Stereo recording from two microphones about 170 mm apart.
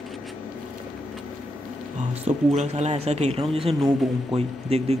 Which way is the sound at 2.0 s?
40° right (ahead or behind).